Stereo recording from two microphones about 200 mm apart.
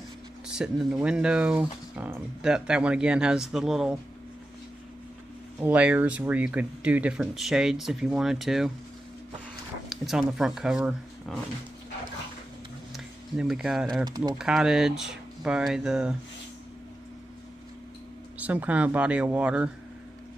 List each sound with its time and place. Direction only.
0.6 s speech: 5° right (ahead or behind)
5.6 s speech: 5° right (ahead or behind)
9.8 s speech: centre (ahead or behind)
12.9 s a sound: centre (ahead or behind)
14.0 s speech: 20° right (ahead or behind)
14.4 s speech: centre (ahead or behind)
18.4 s speech: 10° right (ahead or behind)